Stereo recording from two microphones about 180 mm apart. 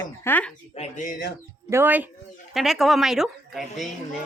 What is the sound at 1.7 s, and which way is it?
Speech, 10° right (ahead or behind).